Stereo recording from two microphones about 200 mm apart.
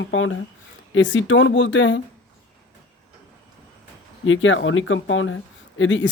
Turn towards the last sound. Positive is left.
turn(degrees=65)  # may be behind; listen again after turning